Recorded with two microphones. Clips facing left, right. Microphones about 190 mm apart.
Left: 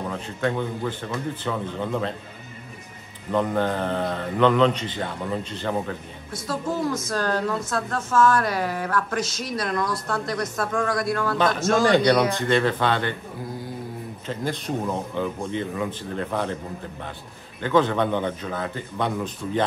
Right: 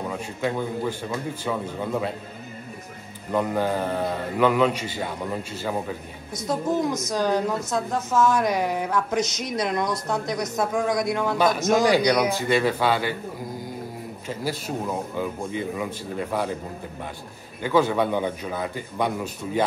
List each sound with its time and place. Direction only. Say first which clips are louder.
0.1 s a woman's voice: left 1 dB; 10° right (ahead or behind)
3.3 s a woman's voice: left 1 dB; 10° right (ahead or behind)
6.3 s a woman's voice: right 3 dB; 20° right (ahead or behind)
14.2 s a woman's voice: left 1 dB; 10° right (ahead or behind)
17.6 s a woman's voice: even; 10° right (ahead or behind)